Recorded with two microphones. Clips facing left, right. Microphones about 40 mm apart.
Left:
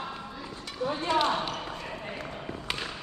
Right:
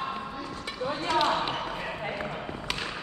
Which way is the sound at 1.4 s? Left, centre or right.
Right.